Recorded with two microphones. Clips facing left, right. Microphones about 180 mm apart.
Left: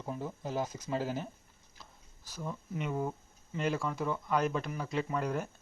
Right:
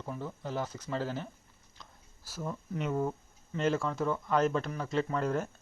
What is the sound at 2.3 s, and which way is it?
Speech, 5° right (ahead or behind).